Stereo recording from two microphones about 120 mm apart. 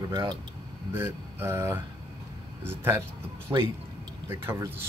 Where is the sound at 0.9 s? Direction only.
20° right (ahead or behind).